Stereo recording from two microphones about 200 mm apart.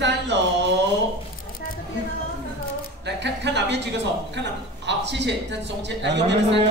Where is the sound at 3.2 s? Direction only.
60° right (ahead or behind).